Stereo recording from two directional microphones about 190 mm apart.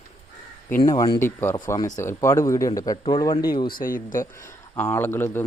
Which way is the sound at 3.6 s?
50° left (ahead or behind).